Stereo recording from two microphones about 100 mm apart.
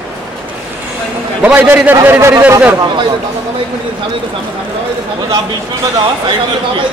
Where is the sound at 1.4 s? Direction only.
20° right (ahead or behind).